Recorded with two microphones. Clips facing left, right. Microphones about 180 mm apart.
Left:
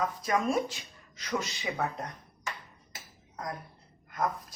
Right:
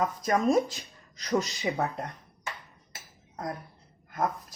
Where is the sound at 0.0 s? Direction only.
45° right (ahead or behind).